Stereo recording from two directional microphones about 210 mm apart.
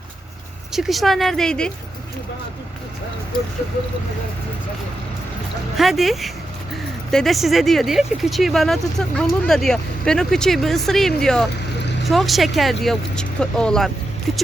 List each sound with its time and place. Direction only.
0.7 s speech: centre (ahead or behind)
3.3 s a sound: 20° left (ahead or behind)
5.7 s speech: centre (ahead or behind)